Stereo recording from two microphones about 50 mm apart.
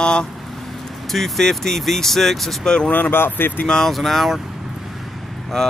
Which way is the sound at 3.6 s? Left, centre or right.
Centre.